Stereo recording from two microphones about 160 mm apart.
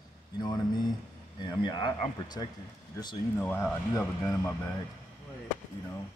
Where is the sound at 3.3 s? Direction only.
15° left (ahead or behind).